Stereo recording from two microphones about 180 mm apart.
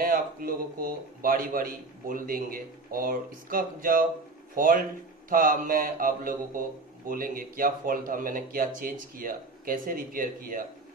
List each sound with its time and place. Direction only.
0.0 s a man's voice: 50° right (ahead or behind)